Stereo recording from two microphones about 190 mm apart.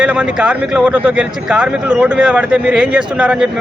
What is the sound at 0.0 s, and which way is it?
Speech, 5° right (ahead or behind).